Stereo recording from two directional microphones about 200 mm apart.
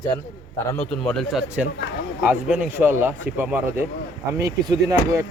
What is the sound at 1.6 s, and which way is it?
A man's voice, 5° right (ahead or behind).